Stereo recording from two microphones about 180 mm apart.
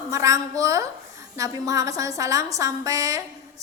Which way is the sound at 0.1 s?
20° right (ahead or behind).